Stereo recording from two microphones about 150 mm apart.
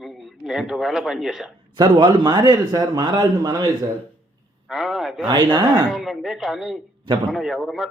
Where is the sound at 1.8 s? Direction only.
30° right (ahead or behind).